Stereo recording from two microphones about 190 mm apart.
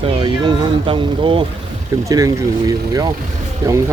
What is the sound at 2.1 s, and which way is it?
Speech, 15° right (ahead or behind).